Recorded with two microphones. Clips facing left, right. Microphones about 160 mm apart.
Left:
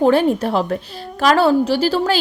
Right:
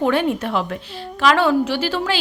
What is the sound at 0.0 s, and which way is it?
A woman's voice, 35° left (ahead or behind).